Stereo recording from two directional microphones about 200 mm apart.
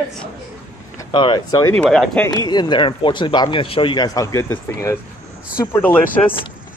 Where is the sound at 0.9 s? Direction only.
25° left (ahead or behind).